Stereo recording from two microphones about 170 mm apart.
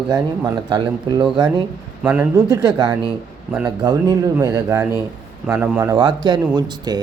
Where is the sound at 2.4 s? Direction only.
25° right (ahead or behind).